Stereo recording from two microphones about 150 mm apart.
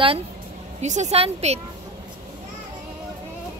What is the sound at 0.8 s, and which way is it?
Speech, 50° right (ahead or behind).